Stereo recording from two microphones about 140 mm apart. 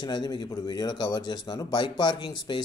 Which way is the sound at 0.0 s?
30° left (ahead or behind).